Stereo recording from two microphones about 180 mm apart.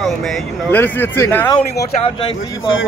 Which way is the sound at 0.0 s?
Centre (ahead or behind).